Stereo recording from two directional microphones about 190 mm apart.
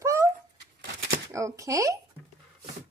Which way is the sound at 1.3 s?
15° right (ahead or behind).